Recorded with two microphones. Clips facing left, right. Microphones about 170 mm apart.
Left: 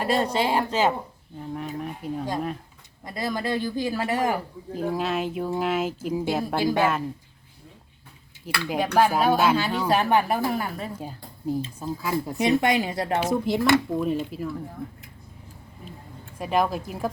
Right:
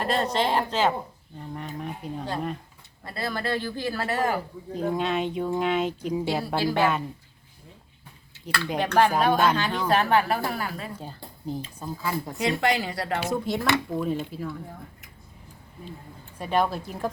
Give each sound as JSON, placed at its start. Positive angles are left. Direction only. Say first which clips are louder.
{"t": 0.0, "sound": "speech", "louder": "left 1 dB", "side_deg": 10}
{"t": 3.0, "sound": "speech", "louder": "left 2 dB", "side_deg": 15}
{"t": 4.7, "sound": "speech", "louder": "even", "side_deg": 5}
{"t": 6.6, "sound": "speech", "louder": "left 2 dB", "side_deg": 15}
{"t": 8.6, "sound": "speech", "louder": "left 1 dB", "side_deg": 5}
{"t": 10.9, "sound": "speech", "louder": "left 3 dB", "side_deg": 10}
{"t": 12.4, "sound": "a woman's voice", "louder": "left 3 dB", "side_deg": 20}
{"t": 13.3, "sound": "speech", "louder": "left 5 dB", "side_deg": 10}
{"t": 16.4, "sound": "speech", "louder": "left 1 dB", "side_deg": 10}